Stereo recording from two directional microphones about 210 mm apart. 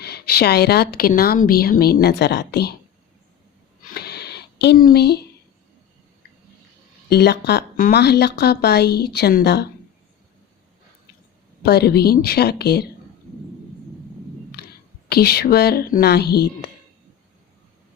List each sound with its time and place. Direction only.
0.0 s a woman's voice: 50° left (ahead or behind)
3.8 s a sound: 50° left (ahead or behind)
7.1 s a woman's voice: 50° left (ahead or behind)
11.6 s a woman's voice: 50° left (ahead or behind)
15.1 s a woman's voice: 50° left (ahead or behind)